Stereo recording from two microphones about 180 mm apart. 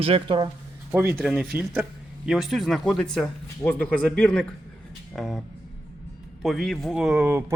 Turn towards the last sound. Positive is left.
turn(degrees=-10)  # may be behind; listen again after turning